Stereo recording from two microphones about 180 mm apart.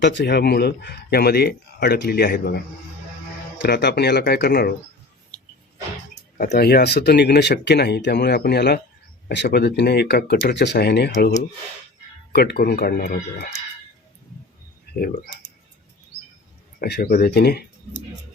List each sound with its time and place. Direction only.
0.0 s speech: 75° left (ahead or behind); by 2.6 s 60° left (ahead or behind)
3.6 s speech: 70° left (ahead or behind)
6.3 s speech: 50° left (ahead or behind)
12.3 s speech: 65° left (ahead or behind)
14.9 s speech: 60° left (ahead or behind)
16.8 s speech: 60° left (ahead or behind)